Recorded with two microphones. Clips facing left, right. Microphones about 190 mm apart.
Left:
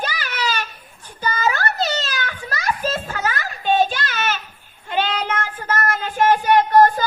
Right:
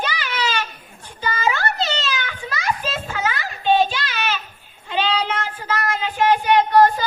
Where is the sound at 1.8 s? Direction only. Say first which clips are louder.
Left 1 dB; 45° left (ahead or behind).